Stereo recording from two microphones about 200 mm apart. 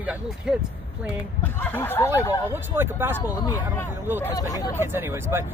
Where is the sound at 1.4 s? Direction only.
10° left (ahead or behind).